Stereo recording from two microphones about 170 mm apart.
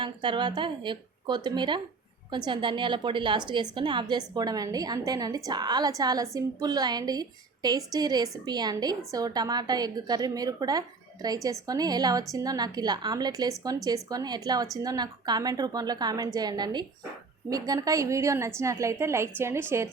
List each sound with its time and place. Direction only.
0.0 s a woman's voice: 30° right (ahead or behind)